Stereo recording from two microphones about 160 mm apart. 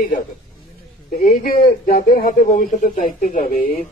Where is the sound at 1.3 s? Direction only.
65° left (ahead or behind).